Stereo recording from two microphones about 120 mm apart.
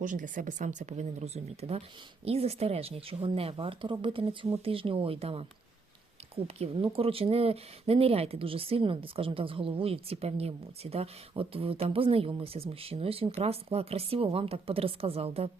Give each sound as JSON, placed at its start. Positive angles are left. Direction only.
{"t": 0.0, "sound": "speech", "side_deg": -90}